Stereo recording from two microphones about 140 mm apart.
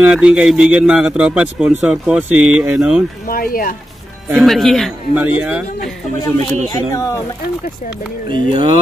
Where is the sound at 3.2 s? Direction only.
90° left.